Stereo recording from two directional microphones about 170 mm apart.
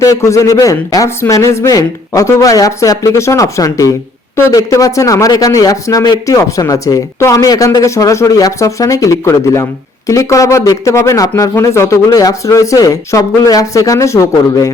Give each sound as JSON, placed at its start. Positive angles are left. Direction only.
{"t": 0.0, "sound": "a man's voice", "side_deg": 20}